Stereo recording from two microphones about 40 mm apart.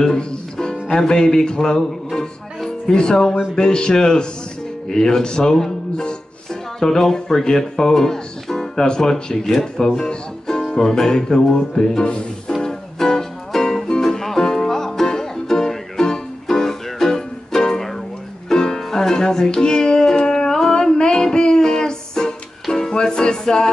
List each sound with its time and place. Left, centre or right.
0.2 s speech: left
1.8 s music: centre
2.9 s speech: centre
12.6 s music: centre
20.2 s a sound: centre